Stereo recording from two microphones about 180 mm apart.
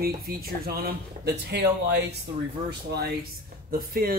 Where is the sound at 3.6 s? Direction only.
55° right (ahead or behind).